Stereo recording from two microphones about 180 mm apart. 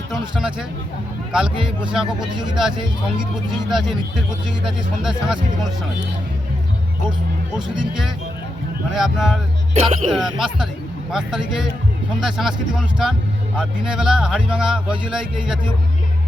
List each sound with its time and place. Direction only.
0.1 s a man's voice: 5° right (ahead or behind)
3.7 s a man's voice: centre (ahead or behind)
8.9 s a man's voice: centre (ahead or behind)
9.7 s speech: 35° right (ahead or behind)
10.1 s a man's voice: centre (ahead or behind)